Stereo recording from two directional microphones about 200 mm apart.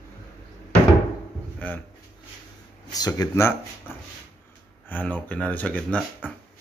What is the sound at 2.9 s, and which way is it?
Speech, 20° left (ahead or behind).